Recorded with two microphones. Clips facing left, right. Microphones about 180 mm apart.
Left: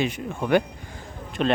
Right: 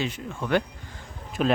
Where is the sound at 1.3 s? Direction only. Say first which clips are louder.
Left 1 dB; 5° right (ahead or behind).